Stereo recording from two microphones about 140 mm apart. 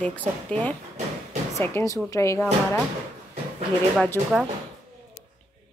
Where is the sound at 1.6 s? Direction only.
20° left (ahead or behind).